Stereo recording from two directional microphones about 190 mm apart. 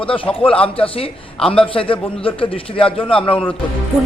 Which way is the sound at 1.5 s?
30° left (ahead or behind).